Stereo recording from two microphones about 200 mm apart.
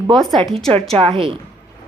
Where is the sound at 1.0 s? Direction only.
25° right (ahead or behind).